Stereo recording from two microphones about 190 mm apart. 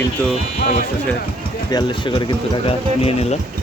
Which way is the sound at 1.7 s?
25° left (ahead or behind).